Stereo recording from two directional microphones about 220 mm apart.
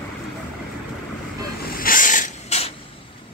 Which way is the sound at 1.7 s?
40° left (ahead or behind).